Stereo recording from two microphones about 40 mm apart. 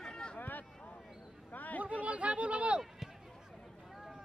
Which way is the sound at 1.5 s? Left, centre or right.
Left.